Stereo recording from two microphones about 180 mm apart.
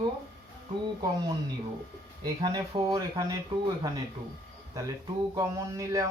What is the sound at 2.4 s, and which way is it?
Speech, 20° right (ahead or behind).